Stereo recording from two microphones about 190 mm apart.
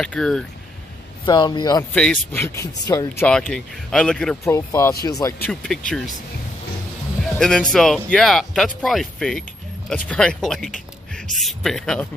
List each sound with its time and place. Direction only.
0.0 s speech: 5° left (ahead or behind)
1.2 s a man's voice: 25° left (ahead or behind)
2.0 s a man's voice: 5° left (ahead or behind)
3.3 s speech: 5° left (ahead or behind)
4.5 s a man's voice: 15° left (ahead or behind)
5.4 s speech: 5° left (ahead or behind)
7.3 s speech: 5° left (ahead or behind)